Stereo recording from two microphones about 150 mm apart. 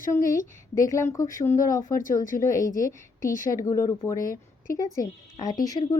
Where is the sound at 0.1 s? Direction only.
20° left (ahead or behind).